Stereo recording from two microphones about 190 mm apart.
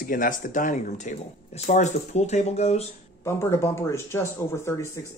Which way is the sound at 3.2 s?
15° left (ahead or behind).